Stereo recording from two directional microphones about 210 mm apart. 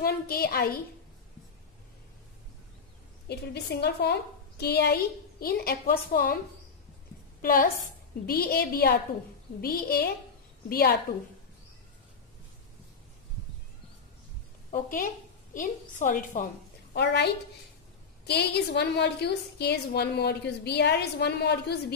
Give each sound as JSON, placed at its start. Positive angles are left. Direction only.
{"t": 0.0, "sound": "a woman's voice", "side_deg": 45}
{"t": 3.3, "sound": "a woman's voice", "side_deg": 50}
{"t": 7.4, "sound": "a woman's voice", "side_deg": 45}
{"t": 14.7, "sound": "a woman's voice", "side_deg": 40}
{"t": 16.9, "sound": "a woman's voice", "side_deg": 55}